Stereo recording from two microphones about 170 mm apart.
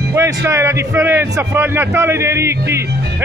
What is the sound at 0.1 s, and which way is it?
A man's voice, 15° right (ahead or behind).